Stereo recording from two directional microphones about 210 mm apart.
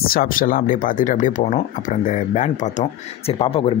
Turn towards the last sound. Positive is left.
turn(degrees=25)  # may be behind; listen again after turning